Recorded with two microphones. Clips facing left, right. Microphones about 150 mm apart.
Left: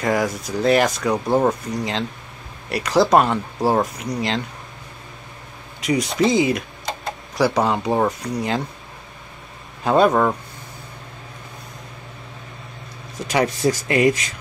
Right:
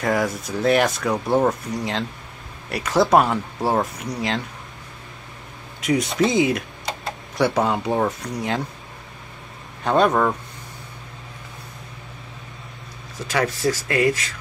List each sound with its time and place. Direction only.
0.0 s speech: centre (ahead or behind)
5.8 s speech: centre (ahead or behind)
9.8 s speech: 5° left (ahead or behind)
13.3 s speech: 20° left (ahead or behind)